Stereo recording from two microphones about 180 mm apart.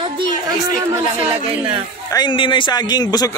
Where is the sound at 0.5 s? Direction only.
15° right (ahead or behind).